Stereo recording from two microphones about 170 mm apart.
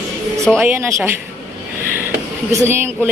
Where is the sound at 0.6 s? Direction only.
15° right (ahead or behind).